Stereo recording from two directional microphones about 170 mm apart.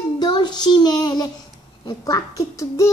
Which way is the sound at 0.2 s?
25° left (ahead or behind).